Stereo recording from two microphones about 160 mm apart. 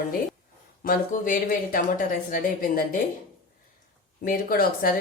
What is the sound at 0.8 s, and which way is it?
A woman's voice, 60° left (ahead or behind).